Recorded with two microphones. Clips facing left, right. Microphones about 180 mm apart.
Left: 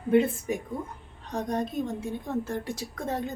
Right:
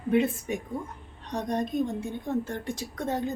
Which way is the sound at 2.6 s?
5° left (ahead or behind).